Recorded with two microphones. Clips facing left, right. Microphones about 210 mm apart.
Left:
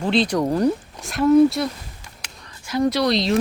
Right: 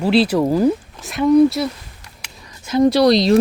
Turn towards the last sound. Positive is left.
turn(degrees=-35)  # may be behind; listen again after turning